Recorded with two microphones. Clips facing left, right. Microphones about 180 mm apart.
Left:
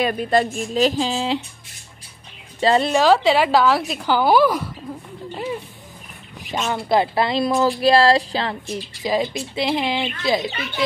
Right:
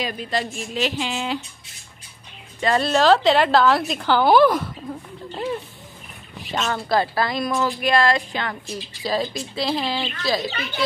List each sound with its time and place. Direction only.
0.0 s a woman's voice: 50° left (ahead or behind)
0.7 s speech: 40° left (ahead or behind)
2.6 s speech: 25° left (ahead or behind)
2.9 s a woman's voice: 10° left (ahead or behind); by 8.7 s 30° left (ahead or behind)
8.7 s speech: 15° left (ahead or behind)